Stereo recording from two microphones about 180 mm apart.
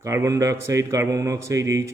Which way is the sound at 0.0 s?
15° right (ahead or behind).